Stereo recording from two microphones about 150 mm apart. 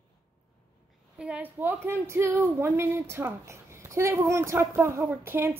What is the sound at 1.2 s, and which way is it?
A woman's voice, 10° right (ahead or behind).